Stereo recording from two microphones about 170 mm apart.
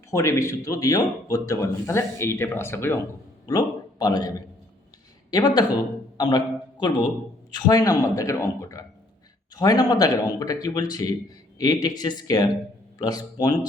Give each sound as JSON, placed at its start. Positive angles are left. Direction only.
{"t": 0.1, "sound": "a man's voice", "side_deg": 15}